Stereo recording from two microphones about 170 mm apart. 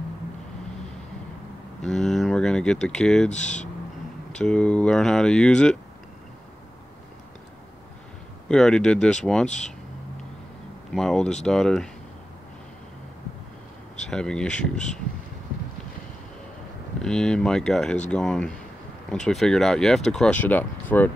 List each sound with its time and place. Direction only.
1.9 s speech: centre (ahead or behind)
3.3 s speech: 45° left (ahead or behind)
4.4 s speech: 5° left (ahead or behind)
8.5 s speech: 5° left (ahead or behind)
11.0 s speech: centre (ahead or behind)
14.1 s speech: 5° left (ahead or behind)
17.0 s speech: 5° left (ahead or behind)